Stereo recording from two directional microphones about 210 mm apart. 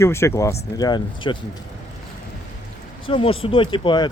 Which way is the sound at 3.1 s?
25° left (ahead or behind).